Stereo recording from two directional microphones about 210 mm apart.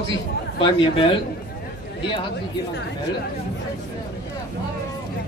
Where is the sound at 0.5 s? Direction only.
25° left (ahead or behind).